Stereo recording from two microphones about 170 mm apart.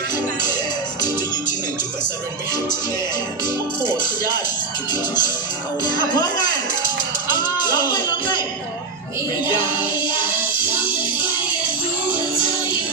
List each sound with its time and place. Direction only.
4.9 s speech: 25° left (ahead or behind)